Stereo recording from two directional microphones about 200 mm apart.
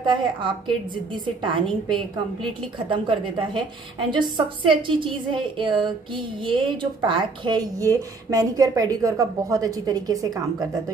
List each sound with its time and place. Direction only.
0.0 s a woman's voice: 25° right (ahead or behind)